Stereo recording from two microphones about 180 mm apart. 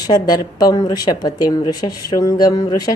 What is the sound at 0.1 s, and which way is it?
A woman's voice, 20° left (ahead or behind).